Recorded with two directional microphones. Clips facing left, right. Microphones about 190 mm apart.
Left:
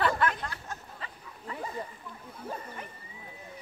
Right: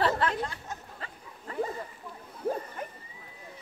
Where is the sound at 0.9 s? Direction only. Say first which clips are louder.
Right 1 dB; 40° right (ahead or behind).